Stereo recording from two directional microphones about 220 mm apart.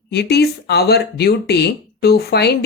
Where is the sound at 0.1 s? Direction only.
50° left (ahead or behind).